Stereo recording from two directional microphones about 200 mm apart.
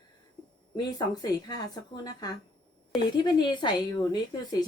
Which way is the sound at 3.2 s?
20° left (ahead or behind).